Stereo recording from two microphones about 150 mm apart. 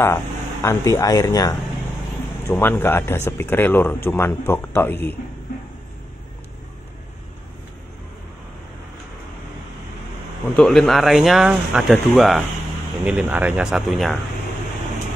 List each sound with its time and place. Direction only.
0.0 s speech: 20° left (ahead or behind)
2.6 s speech: 15° left (ahead or behind)
10.5 s speech: 5° left (ahead or behind)